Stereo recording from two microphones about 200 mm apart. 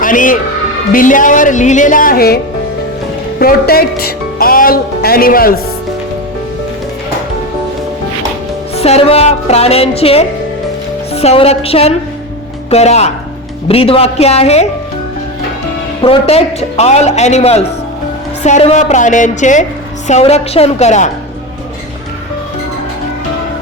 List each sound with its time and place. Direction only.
0.0 s a man's voice: 40° left (ahead or behind)
8.7 s a man's voice: 30° left (ahead or behind)
16.0 s a man's voice: 30° left (ahead or behind)